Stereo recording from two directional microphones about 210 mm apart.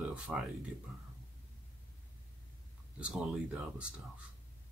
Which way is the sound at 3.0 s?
5° right (ahead or behind).